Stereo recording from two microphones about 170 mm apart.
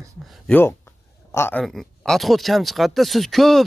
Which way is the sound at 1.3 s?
15° left (ahead or behind).